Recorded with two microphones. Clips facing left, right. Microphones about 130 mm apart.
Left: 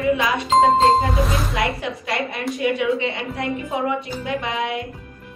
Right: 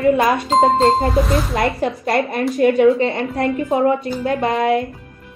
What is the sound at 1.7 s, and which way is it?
A woman's voice, 45° right (ahead or behind).